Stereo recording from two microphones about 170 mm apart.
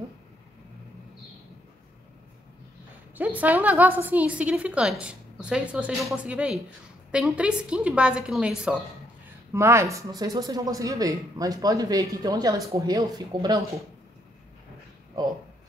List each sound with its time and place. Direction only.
3.2 s a woman's voice: 10° right (ahead or behind)
9.5 s speech: 15° right (ahead or behind)